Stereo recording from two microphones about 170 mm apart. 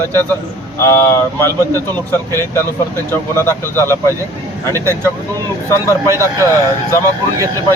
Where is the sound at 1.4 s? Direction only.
15° left (ahead or behind).